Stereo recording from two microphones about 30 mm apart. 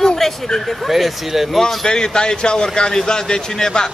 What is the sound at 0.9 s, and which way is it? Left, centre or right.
Speech, centre.